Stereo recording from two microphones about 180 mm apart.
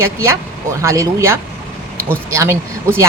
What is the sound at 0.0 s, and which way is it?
Speech, 15° right (ahead or behind).